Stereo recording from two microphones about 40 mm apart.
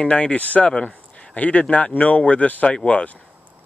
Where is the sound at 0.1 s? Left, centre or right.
Left.